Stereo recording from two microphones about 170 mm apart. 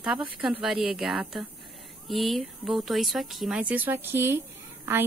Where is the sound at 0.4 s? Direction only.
Centre (ahead or behind).